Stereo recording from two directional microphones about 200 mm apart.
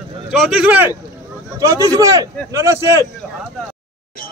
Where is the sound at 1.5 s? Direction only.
15° right (ahead or behind).